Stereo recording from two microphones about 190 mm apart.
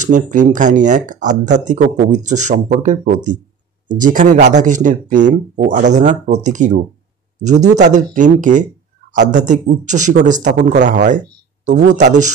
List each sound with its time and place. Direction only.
0.0 s speech: 40° right (ahead or behind)